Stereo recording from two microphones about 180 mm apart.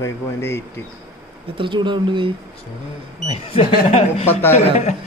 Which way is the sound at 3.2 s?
35° left (ahead or behind).